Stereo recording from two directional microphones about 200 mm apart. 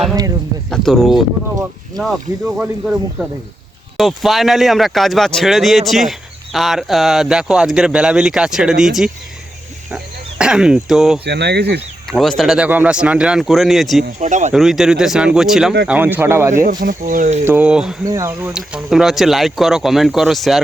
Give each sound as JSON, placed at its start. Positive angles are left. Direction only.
{"t": 0.1, "sound": "speech", "side_deg": -20}
{"t": 0.7, "sound": "speech", "side_deg": 0}
{"t": 2.6, "sound": "speech", "side_deg": 0}
{"t": 11.3, "sound": "speech", "side_deg": -55}
{"t": 12.1, "sound": "speech", "side_deg": 0}
{"t": 14.2, "sound": "speech", "side_deg": -35}
{"t": 14.5, "sound": "speech", "side_deg": 0}
{"t": 16.6, "sound": "speech", "side_deg": -45}
{"t": 17.4, "sound": "speech", "side_deg": -10}